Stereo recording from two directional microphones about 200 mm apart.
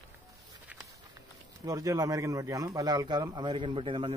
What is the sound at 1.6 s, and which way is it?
Speech, 15° right (ahead or behind).